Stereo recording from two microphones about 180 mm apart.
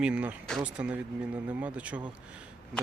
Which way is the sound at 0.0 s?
5° right (ahead or behind).